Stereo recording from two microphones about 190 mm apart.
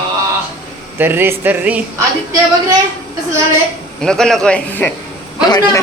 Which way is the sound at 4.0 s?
5° left (ahead or behind).